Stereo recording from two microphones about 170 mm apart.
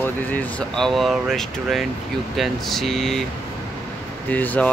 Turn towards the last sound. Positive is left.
turn(degrees=10)  # may be behind; listen again after turning